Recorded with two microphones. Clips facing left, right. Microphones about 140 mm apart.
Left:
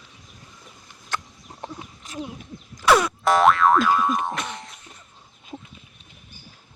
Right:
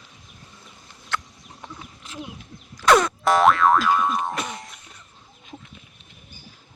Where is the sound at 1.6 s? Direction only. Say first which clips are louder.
Left 4 dB; 40° left (ahead or behind).